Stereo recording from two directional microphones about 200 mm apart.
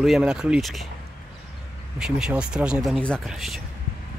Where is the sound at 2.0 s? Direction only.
5° right (ahead or behind).